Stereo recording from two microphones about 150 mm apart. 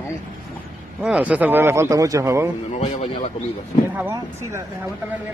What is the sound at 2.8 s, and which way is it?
Speech, 45° left (ahead or behind).